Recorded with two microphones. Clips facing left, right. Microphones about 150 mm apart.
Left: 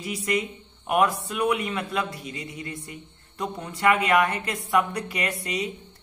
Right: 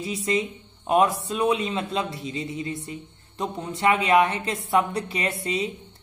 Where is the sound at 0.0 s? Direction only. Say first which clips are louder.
Right 2 dB; 25° right (ahead or behind).